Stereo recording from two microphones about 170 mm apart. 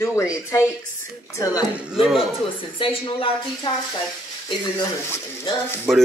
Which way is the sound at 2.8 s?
30° left (ahead or behind).